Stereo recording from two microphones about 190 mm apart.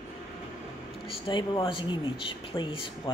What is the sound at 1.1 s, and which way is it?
Speech, 25° left (ahead or behind).